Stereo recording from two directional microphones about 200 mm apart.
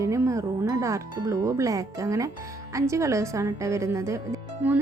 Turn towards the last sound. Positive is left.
turn(degrees=-10)  # may be behind; listen again after turning